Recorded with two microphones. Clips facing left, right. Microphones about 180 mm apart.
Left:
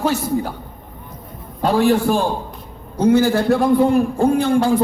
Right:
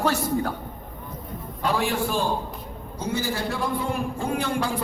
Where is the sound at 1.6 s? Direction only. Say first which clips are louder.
Left 9 dB; 40° left (ahead or behind).